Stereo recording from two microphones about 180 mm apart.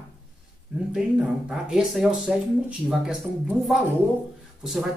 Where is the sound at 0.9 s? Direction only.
5° right (ahead or behind).